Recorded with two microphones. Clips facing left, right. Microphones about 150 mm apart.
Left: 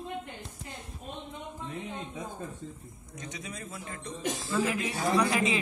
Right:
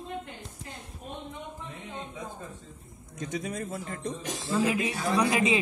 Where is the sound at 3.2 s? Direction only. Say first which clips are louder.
Right 8 dB; 45° right (ahead or behind).